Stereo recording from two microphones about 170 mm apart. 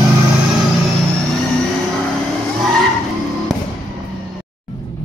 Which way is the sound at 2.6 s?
Centre (ahead or behind).